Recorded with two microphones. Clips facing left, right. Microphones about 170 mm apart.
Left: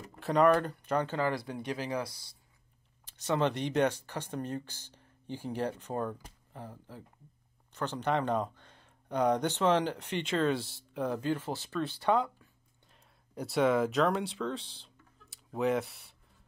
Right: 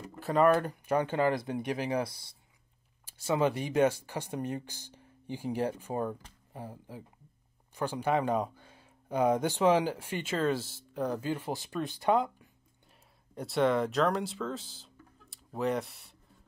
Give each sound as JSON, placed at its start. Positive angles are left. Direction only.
{"t": 0.2, "sound": "speech", "side_deg": 0}
{"t": 3.1, "sound": "speech", "side_deg": -5}
{"t": 13.3, "sound": "speech", "side_deg": 0}